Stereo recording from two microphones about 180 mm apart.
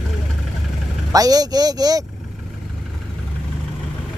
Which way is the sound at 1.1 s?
20° right (ahead or behind).